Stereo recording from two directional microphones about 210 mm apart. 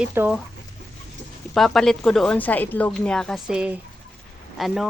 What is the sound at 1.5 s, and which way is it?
A woman's voice, centre (ahead or behind).